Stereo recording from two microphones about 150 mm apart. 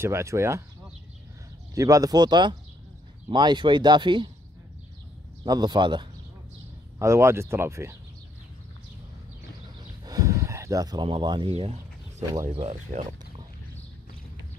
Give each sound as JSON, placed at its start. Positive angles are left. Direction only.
{"t": 0.0, "sound": "speech", "side_deg": -20}
{"t": 1.8, "sound": "speech", "side_deg": -25}
{"t": 5.4, "sound": "speech", "side_deg": -30}
{"t": 7.0, "sound": "speech", "side_deg": -20}
{"t": 10.0, "sound": "speech", "side_deg": -25}
{"t": 12.4, "sound": "speech", "side_deg": -50}